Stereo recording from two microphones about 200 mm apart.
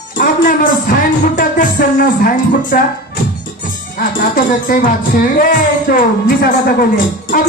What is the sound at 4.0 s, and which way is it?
A man's voice, 45° left (ahead or behind).